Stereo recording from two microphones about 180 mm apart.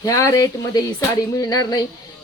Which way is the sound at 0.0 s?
20° left (ahead or behind).